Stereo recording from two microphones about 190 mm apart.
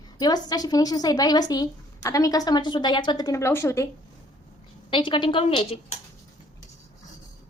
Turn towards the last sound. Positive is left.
turn(degrees=35)  # may be behind; listen again after turning